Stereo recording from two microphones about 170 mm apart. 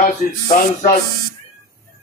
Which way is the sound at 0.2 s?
60° left (ahead or behind).